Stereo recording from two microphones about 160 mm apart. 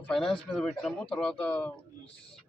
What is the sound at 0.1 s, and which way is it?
Speech, 5° left (ahead or behind).